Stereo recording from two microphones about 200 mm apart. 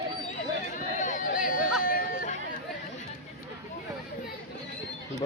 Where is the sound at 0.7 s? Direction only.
40° left (ahead or behind).